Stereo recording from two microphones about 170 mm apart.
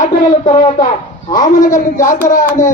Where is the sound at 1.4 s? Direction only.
50° left (ahead or behind).